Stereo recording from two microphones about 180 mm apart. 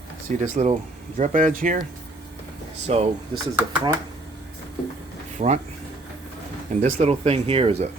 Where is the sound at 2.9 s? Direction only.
35° right (ahead or behind).